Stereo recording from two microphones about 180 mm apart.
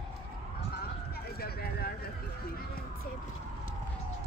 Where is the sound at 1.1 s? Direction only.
60° left (ahead or behind).